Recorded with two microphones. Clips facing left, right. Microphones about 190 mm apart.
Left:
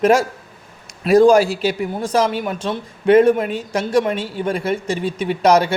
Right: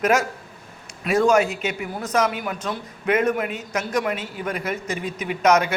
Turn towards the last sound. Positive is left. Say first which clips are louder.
# left 4 dB
turn(degrees=30)  # may be behind; listen again after turning